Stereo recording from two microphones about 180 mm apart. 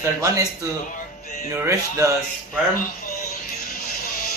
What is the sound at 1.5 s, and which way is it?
Speech, 15° right (ahead or behind).